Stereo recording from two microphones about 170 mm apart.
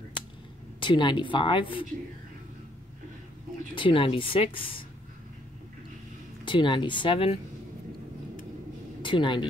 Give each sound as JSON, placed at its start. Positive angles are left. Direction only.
{"t": 0.7, "sound": "a woman's voice", "side_deg": 30}
{"t": 3.7, "sound": "speech", "side_deg": 30}
{"t": 6.4, "sound": "a woman's voice", "side_deg": 30}
{"t": 9.0, "sound": "speech", "side_deg": 30}